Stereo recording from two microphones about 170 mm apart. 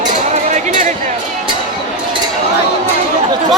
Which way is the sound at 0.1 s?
45° right (ahead or behind).